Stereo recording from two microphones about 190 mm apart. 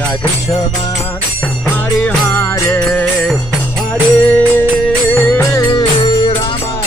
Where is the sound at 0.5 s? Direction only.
30° left (ahead or behind).